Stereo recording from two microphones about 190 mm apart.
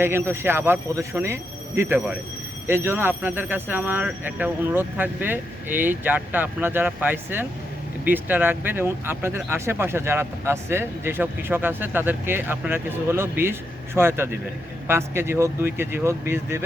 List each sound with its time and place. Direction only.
0.0 s speech: 15° right (ahead or behind)